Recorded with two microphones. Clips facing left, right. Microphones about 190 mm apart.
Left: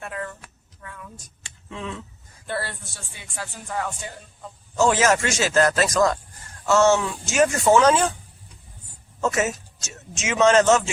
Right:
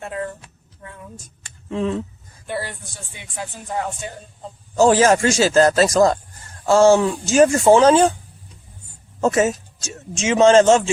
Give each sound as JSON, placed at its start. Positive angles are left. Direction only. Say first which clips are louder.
{"t": 0.0, "sound": "a sound", "louder": "right 5 dB", "side_deg": -25}
{"t": 1.7, "sound": "speech", "louder": "right 11 dB", "side_deg": -40}
{"t": 2.5, "sound": "speech", "louder": "right 2 dB", "side_deg": -15}
{"t": 4.8, "sound": "speech", "louder": "right 5 dB", "side_deg": -35}
{"t": 9.2, "sound": "speech", "louder": "right 6 dB", "side_deg": -30}